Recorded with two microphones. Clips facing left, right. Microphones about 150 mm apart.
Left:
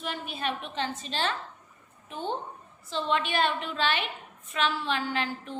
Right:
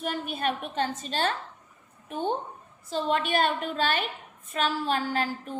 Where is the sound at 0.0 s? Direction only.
50° right (ahead or behind).